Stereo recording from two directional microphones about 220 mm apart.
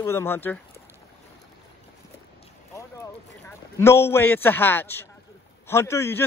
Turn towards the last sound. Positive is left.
turn(degrees=10)  # may be behind; listen again after turning